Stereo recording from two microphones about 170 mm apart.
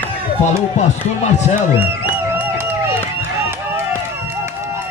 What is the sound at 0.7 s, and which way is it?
Speech, 45° left (ahead or behind).